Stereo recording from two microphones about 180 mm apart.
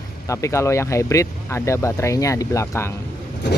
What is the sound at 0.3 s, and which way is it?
Speech, 15° left (ahead or behind).